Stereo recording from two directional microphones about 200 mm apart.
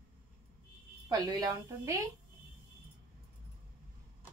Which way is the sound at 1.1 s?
20° right (ahead or behind).